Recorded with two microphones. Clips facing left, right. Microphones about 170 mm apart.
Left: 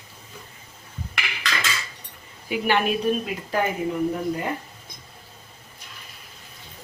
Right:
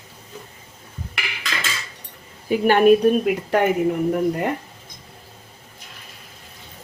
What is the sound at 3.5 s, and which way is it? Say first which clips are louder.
Speech: right 5 dB; 75° right (ahead or behind).